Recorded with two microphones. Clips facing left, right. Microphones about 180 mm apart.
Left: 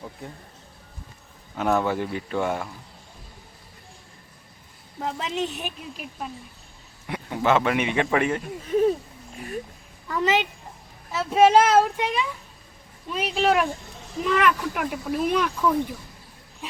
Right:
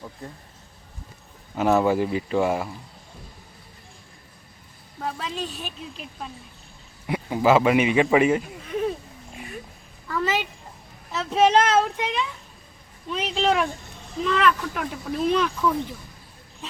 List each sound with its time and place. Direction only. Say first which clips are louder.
1.5 s a man's voice: right 3 dB; 5° right (ahead or behind)
5.0 s a woman's voice: left 3 dB; 20° left (ahead or behind)
6.0 s speech: left 5 dB; 5° left (ahead or behind)
7.1 s a man's voice: right 3 dB; 10° right (ahead or behind)
8.6 s a sound: left 5 dB; 35° left (ahead or behind)
10.1 s a woman's voice: left 2 dB; 20° left (ahead or behind)
11.1 s speech: left 2 dB; 10° left (ahead or behind)